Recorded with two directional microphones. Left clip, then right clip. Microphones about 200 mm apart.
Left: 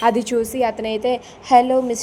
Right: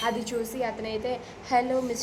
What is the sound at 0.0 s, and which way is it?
A woman's voice, 35° left (ahead or behind).